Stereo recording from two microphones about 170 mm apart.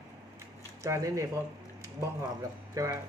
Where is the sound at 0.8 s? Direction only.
20° right (ahead or behind).